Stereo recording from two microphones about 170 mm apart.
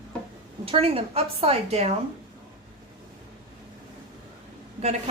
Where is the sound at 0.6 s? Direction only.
35° right (ahead or behind).